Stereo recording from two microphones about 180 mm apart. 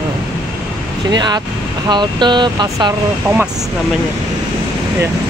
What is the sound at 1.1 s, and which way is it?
Speech, 25° right (ahead or behind).